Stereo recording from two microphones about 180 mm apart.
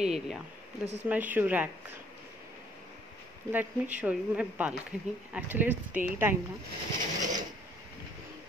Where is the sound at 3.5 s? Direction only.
10° right (ahead or behind).